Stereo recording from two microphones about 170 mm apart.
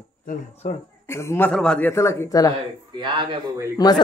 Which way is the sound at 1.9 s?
15° left (ahead or behind).